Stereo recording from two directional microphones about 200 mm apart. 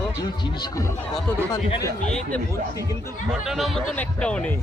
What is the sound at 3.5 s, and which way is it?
Speech, centre (ahead or behind).